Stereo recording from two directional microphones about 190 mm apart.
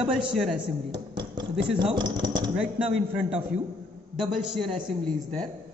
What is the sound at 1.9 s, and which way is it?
Speech, 20° right (ahead or behind).